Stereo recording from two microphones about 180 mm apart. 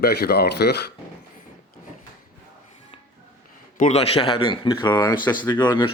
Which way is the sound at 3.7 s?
45° left (ahead or behind).